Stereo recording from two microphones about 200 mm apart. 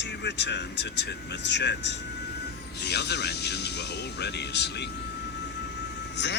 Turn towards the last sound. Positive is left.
turn(degrees=60)  # may be behind; listen again after turning